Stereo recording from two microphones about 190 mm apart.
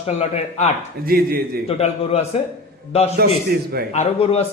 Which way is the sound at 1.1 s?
50° right (ahead or behind).